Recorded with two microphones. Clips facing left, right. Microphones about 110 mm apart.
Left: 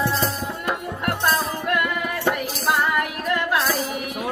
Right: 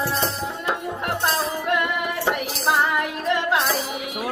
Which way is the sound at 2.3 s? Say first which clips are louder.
Even; 20° right (ahead or behind).